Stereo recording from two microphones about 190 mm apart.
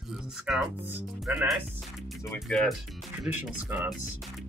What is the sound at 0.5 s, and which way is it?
Speech, 5° right (ahead or behind).